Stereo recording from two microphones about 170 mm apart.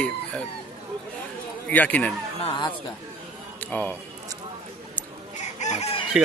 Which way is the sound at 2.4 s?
25° left (ahead or behind).